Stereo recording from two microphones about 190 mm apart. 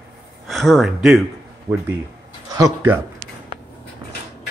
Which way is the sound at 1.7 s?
30° right (ahead or behind).